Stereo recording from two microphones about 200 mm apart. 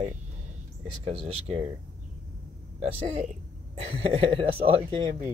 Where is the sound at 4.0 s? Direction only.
30° right (ahead or behind).